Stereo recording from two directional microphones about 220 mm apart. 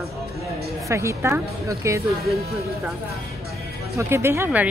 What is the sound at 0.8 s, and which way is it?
Speech, 15° right (ahead or behind).